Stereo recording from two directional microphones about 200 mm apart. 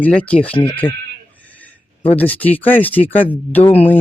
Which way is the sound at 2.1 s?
10° left (ahead or behind).